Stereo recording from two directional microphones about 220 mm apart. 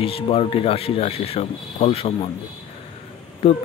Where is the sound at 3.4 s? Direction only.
25° left (ahead or behind).